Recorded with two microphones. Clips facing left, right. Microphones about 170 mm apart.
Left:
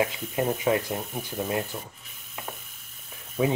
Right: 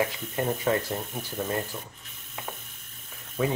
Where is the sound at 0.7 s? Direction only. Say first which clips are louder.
Even; 15° left (ahead or behind).